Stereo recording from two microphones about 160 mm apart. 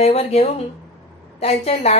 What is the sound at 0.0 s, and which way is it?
A woman's voice, 40° left (ahead or behind).